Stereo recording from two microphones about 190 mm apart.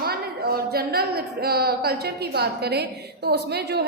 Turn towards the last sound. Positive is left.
turn(degrees=-60)  # may be behind; listen again after turning